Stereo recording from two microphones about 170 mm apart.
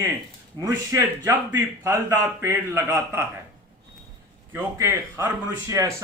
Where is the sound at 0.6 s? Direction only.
20° right (ahead or behind).